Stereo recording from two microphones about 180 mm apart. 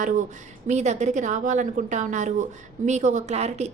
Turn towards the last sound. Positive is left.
turn(degrees=-40)  # may be behind; listen again after turning